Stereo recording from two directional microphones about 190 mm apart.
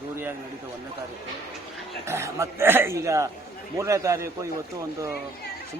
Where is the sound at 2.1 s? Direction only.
15° right (ahead or behind).